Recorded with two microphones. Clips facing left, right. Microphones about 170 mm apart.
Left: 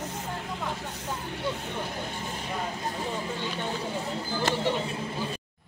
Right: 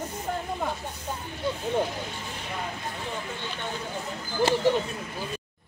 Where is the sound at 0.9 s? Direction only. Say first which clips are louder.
Left 1 dB; 70° left (ahead or behind).